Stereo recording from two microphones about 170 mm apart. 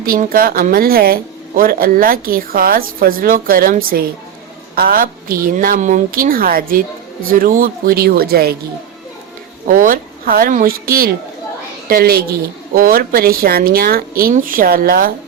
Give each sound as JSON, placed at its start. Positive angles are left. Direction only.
{"t": 0.0, "sound": "speech", "side_deg": -60}
{"t": 9.6, "sound": "speech", "side_deg": -55}